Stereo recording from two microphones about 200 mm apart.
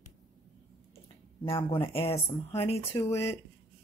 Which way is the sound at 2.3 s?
10° left (ahead or behind).